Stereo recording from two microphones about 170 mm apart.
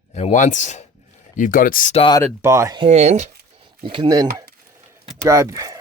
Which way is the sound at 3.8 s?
30° right (ahead or behind).